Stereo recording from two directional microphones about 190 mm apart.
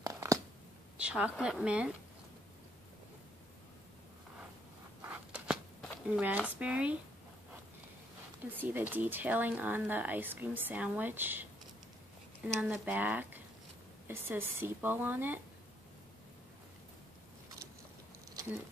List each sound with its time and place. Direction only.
0.0 s a sound: 15° right (ahead or behind)
0.9 s speech: 5° right (ahead or behind)
5.0 s a sound: 5° right (ahead or behind)
6.0 s speech: 10° right (ahead or behind)
8.5 s speech: 10° right (ahead or behind)
12.5 s speech: 5° right (ahead or behind)
18.3 s patter: 15° right (ahead or behind)